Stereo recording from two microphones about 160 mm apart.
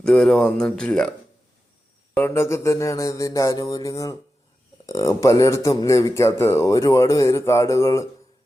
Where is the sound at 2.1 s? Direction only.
15° left (ahead or behind).